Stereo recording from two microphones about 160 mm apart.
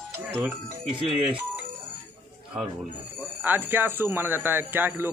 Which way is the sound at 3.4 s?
10° right (ahead or behind).